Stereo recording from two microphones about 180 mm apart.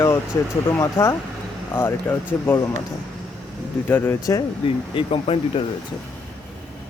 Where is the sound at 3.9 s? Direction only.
10° left (ahead or behind).